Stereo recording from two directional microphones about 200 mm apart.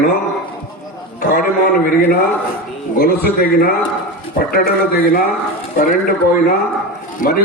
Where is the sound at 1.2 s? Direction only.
45° left (ahead or behind).